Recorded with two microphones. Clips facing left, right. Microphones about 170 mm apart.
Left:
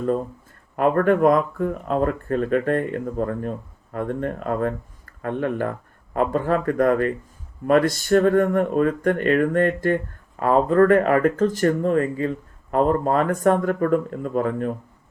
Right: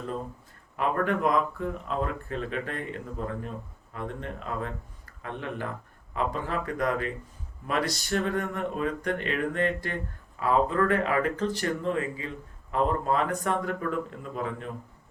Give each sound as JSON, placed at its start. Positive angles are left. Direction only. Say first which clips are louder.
{"t": 0.8, "sound": "speech", "louder": "left 9 dB", "side_deg": 50}